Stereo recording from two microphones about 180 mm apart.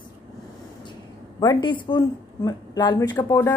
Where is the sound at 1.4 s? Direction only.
25° left (ahead or behind).